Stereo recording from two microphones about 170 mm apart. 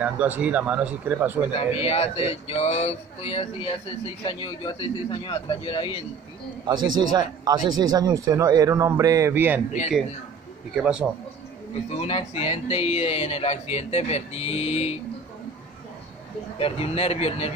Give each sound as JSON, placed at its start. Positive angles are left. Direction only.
{"t": 0.0, "sound": "speech", "side_deg": -10}
{"t": 1.5, "sound": "speech", "side_deg": 35}
{"t": 6.6, "sound": "a man's voice", "side_deg": -25}
{"t": 10.8, "sound": "a man's voice", "side_deg": -5}
{"t": 11.9, "sound": "speech", "side_deg": 40}
{"t": 16.5, "sound": "speech", "side_deg": 35}